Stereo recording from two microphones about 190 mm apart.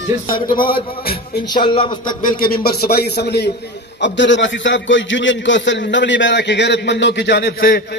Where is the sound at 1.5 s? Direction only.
25° left (ahead or behind).